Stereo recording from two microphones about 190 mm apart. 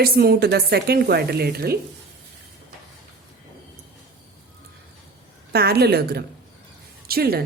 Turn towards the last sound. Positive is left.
turn(degrees=-55)  # may be behind; listen again after turning